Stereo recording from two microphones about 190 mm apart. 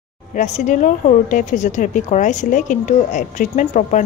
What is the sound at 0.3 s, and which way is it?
A woman's voice, 40° left (ahead or behind).